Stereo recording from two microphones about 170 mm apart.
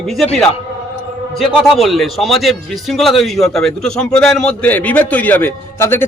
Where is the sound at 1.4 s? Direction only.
Centre (ahead or behind).